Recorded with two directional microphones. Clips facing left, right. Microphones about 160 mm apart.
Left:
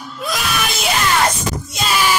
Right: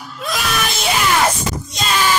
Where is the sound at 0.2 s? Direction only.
Centre (ahead or behind).